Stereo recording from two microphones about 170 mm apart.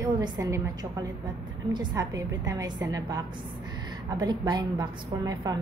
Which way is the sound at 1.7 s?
25° right (ahead or behind).